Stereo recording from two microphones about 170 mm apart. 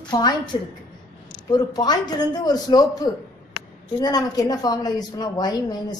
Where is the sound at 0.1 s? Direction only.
20° left (ahead or behind).